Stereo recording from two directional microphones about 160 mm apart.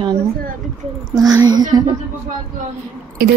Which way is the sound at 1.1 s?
25° right (ahead or behind).